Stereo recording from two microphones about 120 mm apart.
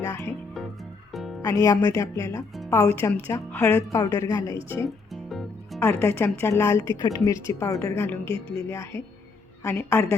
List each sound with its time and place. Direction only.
0.0 s speech: 20° left (ahead or behind)
1.1 s music: centre (ahead or behind)
1.4 s speech: 30° left (ahead or behind)
3.9 s speech: 30° left (ahead or behind)
5.1 s music: centre (ahead or behind)
5.8 s speech: 20° left (ahead or behind)
8.0 s speech: 15° left (ahead or behind)